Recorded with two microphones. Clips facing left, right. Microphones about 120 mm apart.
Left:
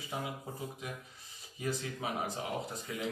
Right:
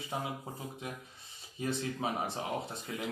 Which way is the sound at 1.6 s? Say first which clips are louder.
Right 2 dB; 25° right (ahead or behind).